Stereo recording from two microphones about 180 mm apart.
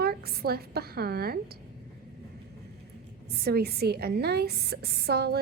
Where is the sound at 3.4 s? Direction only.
60° right (ahead or behind).